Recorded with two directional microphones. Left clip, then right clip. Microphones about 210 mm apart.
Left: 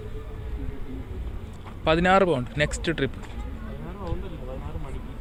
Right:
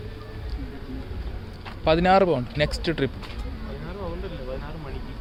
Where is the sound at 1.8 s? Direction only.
5° right (ahead or behind).